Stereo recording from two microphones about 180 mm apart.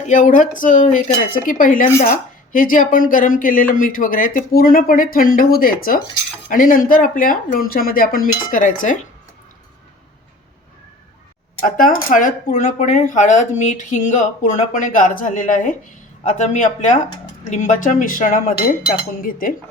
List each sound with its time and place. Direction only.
0.0 s speech: 45° left (ahead or behind)
11.6 s speech: 50° left (ahead or behind)